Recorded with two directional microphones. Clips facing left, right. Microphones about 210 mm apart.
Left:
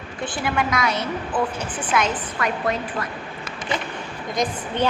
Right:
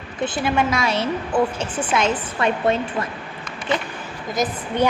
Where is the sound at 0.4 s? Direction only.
25° right (ahead or behind).